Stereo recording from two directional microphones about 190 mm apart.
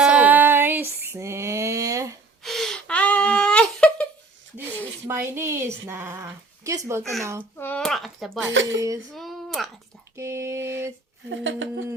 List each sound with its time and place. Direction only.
0.0 s female singing: 5° right (ahead or behind)
2.4 s whimper: centre (ahead or behind)
5.0 s a woman's voice: 15° right (ahead or behind)
7.0 s speech: centre (ahead or behind)
7.5 s a sound: 10° left (ahead or behind)
8.6 s humming: 80° right
9.1 s a sound: centre (ahead or behind)
10.2 s a woman's voice: 15° right (ahead or behind)
11.3 s humming: 80° right